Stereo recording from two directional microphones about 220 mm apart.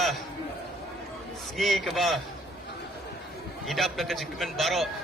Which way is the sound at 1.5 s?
Centre (ahead or behind).